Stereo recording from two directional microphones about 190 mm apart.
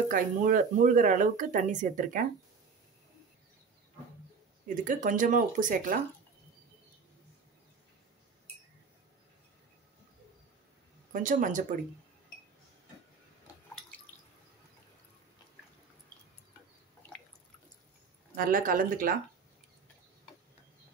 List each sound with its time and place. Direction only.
0.1 s speech: 40° right (ahead or behind)
4.7 s speech: 45° right (ahead or behind)
11.1 s speech: 45° right (ahead or behind)
18.3 s speech: 50° right (ahead or behind)